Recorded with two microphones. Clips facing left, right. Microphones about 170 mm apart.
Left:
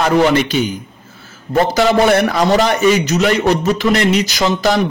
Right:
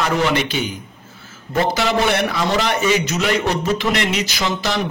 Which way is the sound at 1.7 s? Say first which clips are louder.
Left 8 dB; 45° left (ahead or behind).